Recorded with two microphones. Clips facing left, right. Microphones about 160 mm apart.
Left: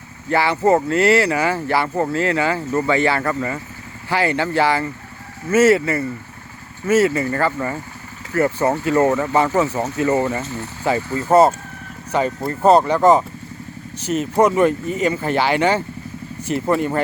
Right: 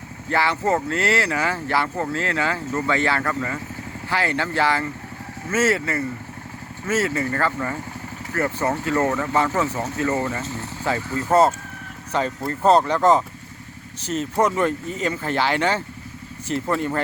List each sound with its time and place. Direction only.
0.3 s speech: 10° left (ahead or behind)